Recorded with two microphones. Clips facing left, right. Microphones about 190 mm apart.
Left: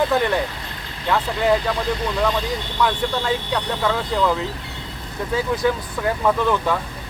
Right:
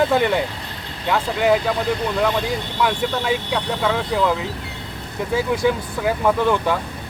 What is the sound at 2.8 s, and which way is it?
Speech, 10° right (ahead or behind).